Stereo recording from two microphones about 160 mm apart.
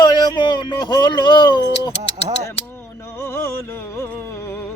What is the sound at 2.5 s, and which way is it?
Music, 15° left (ahead or behind).